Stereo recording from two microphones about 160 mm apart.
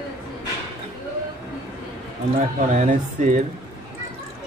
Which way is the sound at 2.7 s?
50° right (ahead or behind).